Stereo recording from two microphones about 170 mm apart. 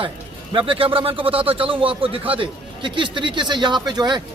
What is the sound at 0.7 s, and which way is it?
A man's voice, 30° right (ahead or behind).